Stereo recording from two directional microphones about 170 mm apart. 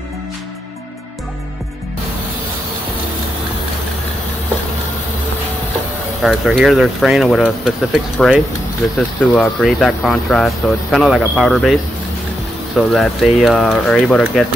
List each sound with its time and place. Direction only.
6.2 s speech: centre (ahead or behind)
12.7 s speech: centre (ahead or behind)